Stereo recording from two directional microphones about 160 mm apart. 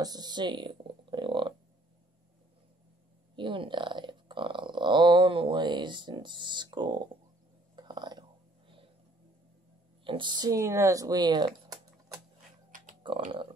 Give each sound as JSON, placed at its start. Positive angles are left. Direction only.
{"t": 0.0, "sound": "a sound", "side_deg": -25}
{"t": 3.3, "sound": "burping", "side_deg": -30}
{"t": 7.7, "sound": "whispering", "side_deg": -30}
{"t": 10.0, "sound": "speech", "side_deg": -30}
{"t": 13.0, "sound": "typing", "side_deg": -30}